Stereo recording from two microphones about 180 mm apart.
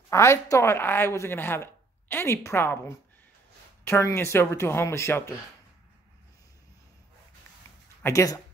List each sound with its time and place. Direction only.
0.1 s a woman's voice: 15° left (ahead or behind)
3.8 s a woman's voice: 15° left (ahead or behind)
8.0 s speech: 15° left (ahead or behind)